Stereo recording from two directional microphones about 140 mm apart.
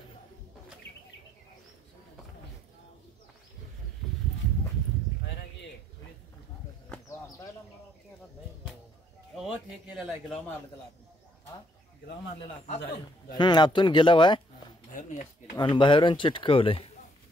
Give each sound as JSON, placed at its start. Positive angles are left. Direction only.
{"t": 9.3, "sound": "a man's voice", "side_deg": 0}
{"t": 13.3, "sound": "speech", "side_deg": 30}
{"t": 15.0, "sound": "speech", "side_deg": 65}
{"t": 15.5, "sound": "speech", "side_deg": 30}